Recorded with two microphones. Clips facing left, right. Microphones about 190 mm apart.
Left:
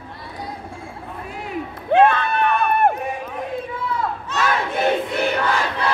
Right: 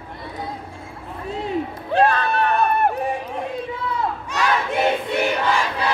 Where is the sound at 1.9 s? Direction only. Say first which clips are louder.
Left 3 dB; 35° right (ahead or behind).